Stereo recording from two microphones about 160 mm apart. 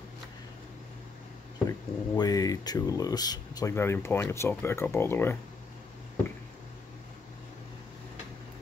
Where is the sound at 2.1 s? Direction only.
25° left (ahead or behind).